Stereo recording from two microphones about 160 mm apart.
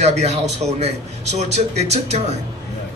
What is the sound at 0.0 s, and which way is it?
A man's voice, 45° right (ahead or behind).